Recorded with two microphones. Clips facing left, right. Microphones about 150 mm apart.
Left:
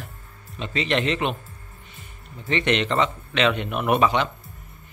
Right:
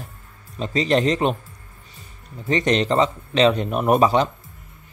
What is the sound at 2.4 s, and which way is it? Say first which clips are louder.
A man's voice: right 3 dB; 35° right (ahead or behind).